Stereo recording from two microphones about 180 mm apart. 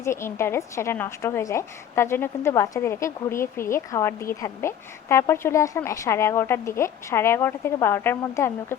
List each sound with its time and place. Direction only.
0.0 s a woman's voice: 15° left (ahead or behind)